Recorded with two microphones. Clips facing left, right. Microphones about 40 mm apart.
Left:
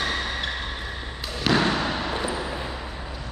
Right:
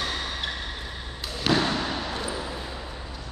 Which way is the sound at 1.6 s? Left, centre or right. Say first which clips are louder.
Left 3 dB; left.